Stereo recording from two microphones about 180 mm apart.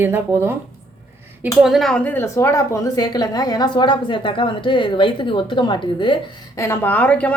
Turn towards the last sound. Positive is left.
turn(degrees=5)  # may be behind; listen again after turning